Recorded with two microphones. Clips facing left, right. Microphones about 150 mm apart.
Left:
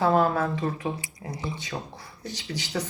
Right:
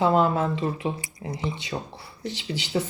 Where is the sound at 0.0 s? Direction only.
20° right (ahead or behind).